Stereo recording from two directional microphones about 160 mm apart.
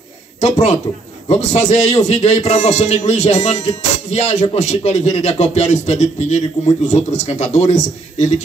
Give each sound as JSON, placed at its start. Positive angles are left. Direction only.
{"t": 0.4, "sound": "a man's voice", "side_deg": 45}